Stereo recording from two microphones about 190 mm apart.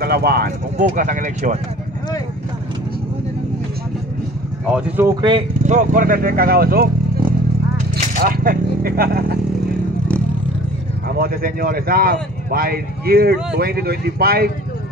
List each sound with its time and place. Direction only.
0.0 s speech: 55° right (ahead or behind)
4.6 s speech: 10° right (ahead or behind)
5.7 s speech: 45° right (ahead or behind)
7.9 s a sound: 50° right (ahead or behind)
11.1 s speech: 50° right (ahead or behind)